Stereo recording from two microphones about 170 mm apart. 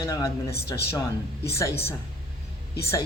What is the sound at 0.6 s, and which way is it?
Speech, 70° left (ahead or behind).